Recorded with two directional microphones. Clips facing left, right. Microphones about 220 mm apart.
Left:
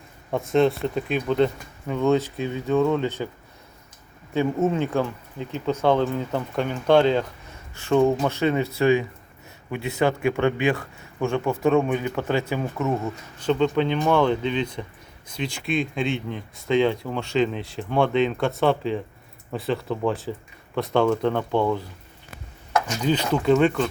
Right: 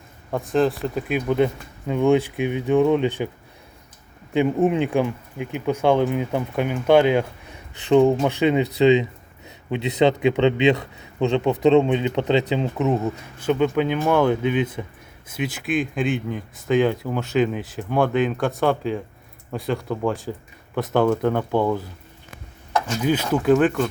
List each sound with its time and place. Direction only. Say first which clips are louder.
0.3 s speech: even; centre (ahead or behind); by 3.2 s 15° right (ahead or behind)
4.4 s a man's voice: right 3 dB; 15° right (ahead or behind)
23.0 s speech: right 2 dB; 5° right (ahead or behind)